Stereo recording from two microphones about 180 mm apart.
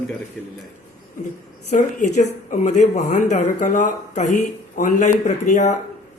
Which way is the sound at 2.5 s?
45° left (ahead or behind).